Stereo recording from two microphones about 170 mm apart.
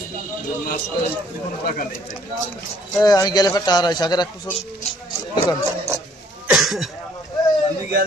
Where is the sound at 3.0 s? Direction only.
20° left (ahead or behind).